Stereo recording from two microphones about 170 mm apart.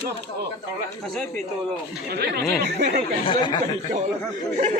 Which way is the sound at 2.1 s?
70° right (ahead or behind).